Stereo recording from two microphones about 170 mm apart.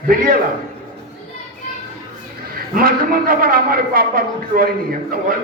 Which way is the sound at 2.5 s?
60° right (ahead or behind).